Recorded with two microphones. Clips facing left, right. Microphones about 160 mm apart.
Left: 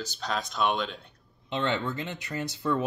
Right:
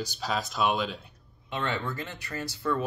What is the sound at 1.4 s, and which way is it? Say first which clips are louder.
Speech: left 3 dB; 20° left (ahead or behind).